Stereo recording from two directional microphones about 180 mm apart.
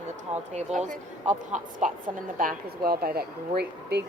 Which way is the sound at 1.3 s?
45° right (ahead or behind).